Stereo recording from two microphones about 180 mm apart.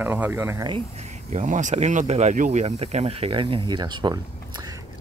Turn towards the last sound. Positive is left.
turn(degrees=-25)  # may be behind; listen again after turning